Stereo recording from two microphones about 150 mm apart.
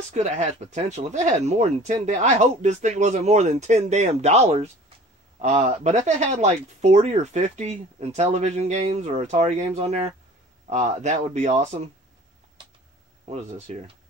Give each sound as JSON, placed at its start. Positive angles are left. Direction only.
{"t": 0.1, "sound": "speech", "side_deg": -50}
{"t": 13.3, "sound": "speech", "side_deg": -50}